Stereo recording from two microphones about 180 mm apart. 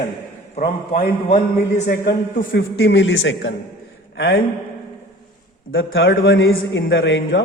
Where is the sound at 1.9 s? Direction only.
55° left (ahead or behind).